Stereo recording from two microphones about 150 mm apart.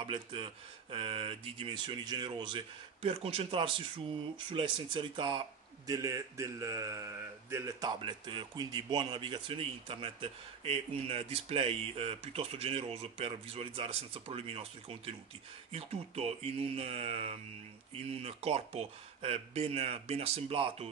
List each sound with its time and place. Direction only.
0.0 s a man's voice: 35° right (ahead or behind)
5.9 s a man's voice: 25° right (ahead or behind); by 20.9 s 40° right (ahead or behind)